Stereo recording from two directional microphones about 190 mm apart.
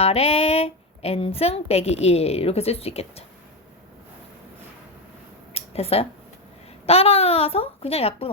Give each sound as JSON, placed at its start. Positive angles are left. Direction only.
{"t": 0.0, "sound": "a woman's voice", "side_deg": 30}
{"t": 5.5, "sound": "a sound", "side_deg": 30}
{"t": 6.8, "sound": "a woman's voice", "side_deg": 30}